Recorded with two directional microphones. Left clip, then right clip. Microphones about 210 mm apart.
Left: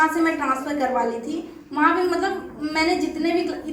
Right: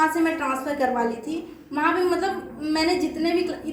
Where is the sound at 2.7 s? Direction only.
15° right (ahead or behind).